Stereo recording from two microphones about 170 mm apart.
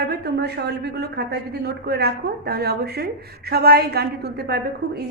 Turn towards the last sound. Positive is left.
turn(degrees=-75)  # may be behind; listen again after turning